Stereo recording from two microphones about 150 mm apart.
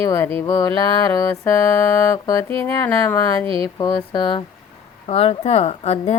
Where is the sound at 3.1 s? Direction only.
25° left (ahead or behind).